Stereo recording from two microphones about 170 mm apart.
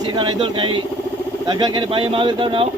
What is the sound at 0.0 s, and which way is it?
A man's voice, 25° right (ahead or behind).